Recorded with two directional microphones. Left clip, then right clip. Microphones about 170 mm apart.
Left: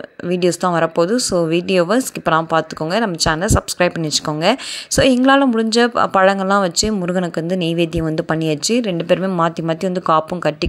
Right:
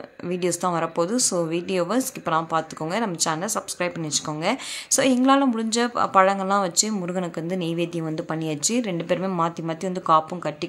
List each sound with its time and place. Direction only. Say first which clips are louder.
0.3 s speech: left 7 dB; 30° left (ahead or behind)